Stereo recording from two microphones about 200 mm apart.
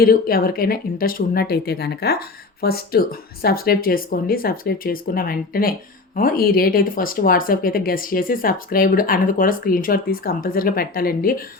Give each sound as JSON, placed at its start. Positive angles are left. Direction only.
{"t": 0.0, "sound": "speech", "side_deg": 45}